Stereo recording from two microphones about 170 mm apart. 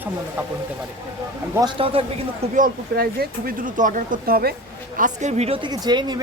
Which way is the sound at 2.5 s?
55° right (ahead or behind).